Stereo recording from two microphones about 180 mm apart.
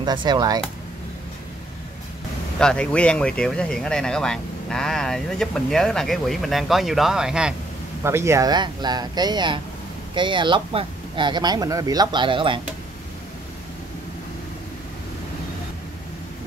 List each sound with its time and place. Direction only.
0.0 s speech: 25° right (ahead or behind)
2.6 s speech: 5° left (ahead or behind)
8.0 s speech: 15° right (ahead or behind)